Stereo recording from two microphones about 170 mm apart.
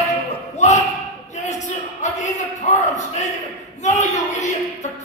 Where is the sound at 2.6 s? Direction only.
45° left (ahead or behind).